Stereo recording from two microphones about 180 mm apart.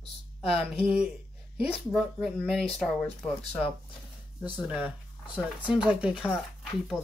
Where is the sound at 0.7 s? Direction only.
35° left (ahead or behind).